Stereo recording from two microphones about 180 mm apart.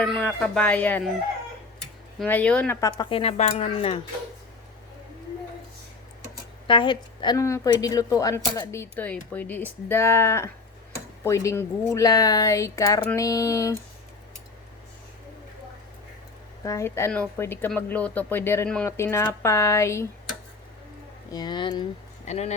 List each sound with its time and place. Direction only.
0.0 s speech: 5° left (ahead or behind)
2.1 s speech: 10° left (ahead or behind)
2.8 s speech: 25° left (ahead or behind)
6.7 s speech: 25° left (ahead or behind)
16.6 s speech: 15° left (ahead or behind)
21.3 s speech: 25° left (ahead or behind)
22.3 s speech: 40° left (ahead or behind)